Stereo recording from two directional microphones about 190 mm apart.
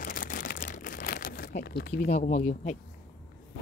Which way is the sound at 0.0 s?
45° left (ahead or behind).